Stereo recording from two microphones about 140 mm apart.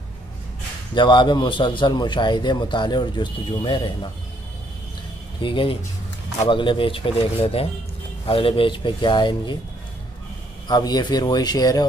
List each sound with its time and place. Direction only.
0.9 s a man's voice: 35° left (ahead or behind)
5.4 s a man's voice: 35° left (ahead or behind)
10.7 s a man's voice: 30° left (ahead or behind)